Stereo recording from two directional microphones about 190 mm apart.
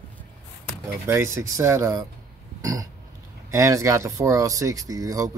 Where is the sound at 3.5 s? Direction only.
15° right (ahead or behind).